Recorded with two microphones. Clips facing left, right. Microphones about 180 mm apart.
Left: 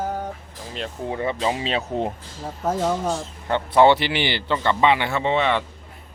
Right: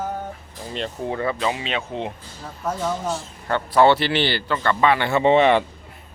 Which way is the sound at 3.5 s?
20° left (ahead or behind).